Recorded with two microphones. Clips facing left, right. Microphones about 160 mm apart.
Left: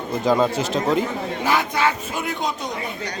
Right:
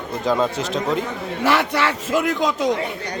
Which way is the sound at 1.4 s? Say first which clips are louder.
Right 2 dB; 75° right (ahead or behind).